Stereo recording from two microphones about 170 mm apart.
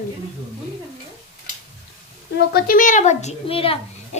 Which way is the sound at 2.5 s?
55° left (ahead or behind).